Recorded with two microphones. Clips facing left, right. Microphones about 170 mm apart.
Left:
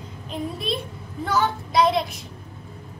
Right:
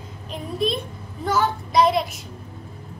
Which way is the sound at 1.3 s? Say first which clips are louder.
Right 1 dB; centre (ahead or behind).